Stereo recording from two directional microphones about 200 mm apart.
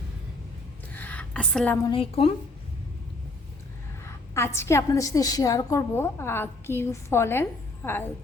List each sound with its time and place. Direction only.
0.9 s a sound: 10° left (ahead or behind)
1.9 s a woman's voice: 30° left (ahead or behind)
4.0 s a woman's voice: 15° left (ahead or behind)